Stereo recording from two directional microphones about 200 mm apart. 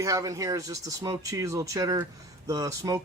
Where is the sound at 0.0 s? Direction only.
15° right (ahead or behind).